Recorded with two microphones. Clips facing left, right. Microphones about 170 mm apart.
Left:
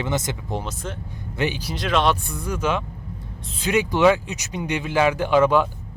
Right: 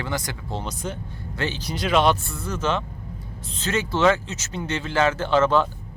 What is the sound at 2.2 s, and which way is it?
Speech, 15° left (ahead or behind).